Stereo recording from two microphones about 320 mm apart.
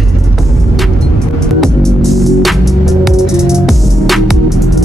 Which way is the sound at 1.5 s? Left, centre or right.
Centre.